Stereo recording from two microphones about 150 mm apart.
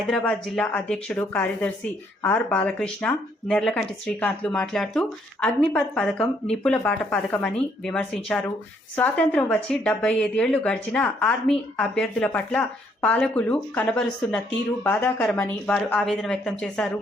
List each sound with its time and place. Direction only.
0.1 s a woman's voice: 5° left (ahead or behind)
15.3 s speech: 5° left (ahead or behind)